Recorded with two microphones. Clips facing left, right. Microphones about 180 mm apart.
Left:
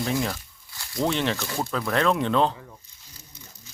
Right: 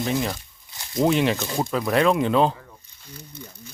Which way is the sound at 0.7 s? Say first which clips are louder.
Right 5 dB; 20° right (ahead or behind).